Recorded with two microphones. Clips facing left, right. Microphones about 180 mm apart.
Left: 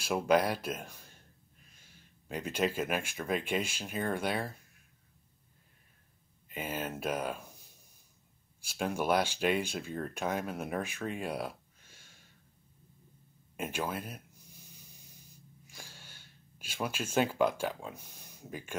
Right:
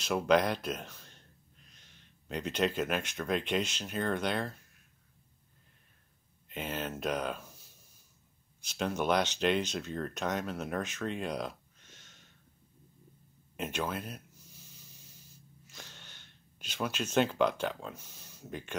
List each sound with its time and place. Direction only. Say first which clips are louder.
0.0 s speech: right 1 dB; 10° left (ahead or behind)
6.5 s speech: even; 10° left (ahead or behind)
13.6 s a sound: even; 10° left (ahead or behind)